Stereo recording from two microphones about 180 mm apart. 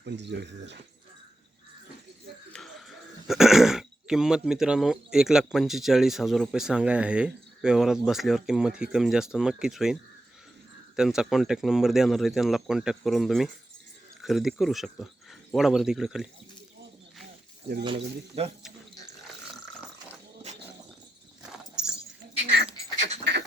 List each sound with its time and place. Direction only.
0.0 s speech: 70° right (ahead or behind)
2.5 s a sound: centre (ahead or behind)
3.2 s speech: centre (ahead or behind)
17.8 s speech: 30° right (ahead or behind)
22.4 s dog: 70° right (ahead or behind)
23.3 s duck: 70° right (ahead or behind)